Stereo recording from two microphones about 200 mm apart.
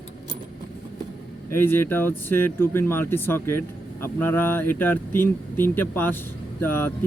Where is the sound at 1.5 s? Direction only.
10° left (ahead or behind).